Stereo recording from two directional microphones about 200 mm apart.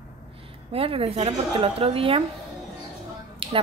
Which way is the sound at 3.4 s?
25° right (ahead or behind).